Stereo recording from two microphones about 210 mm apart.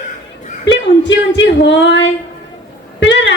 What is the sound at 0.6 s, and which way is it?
Female singing, 60° left (ahead or behind).